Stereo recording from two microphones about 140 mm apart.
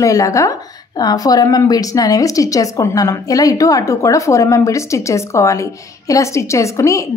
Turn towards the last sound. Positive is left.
turn(degrees=20)  # may be behind; listen again after turning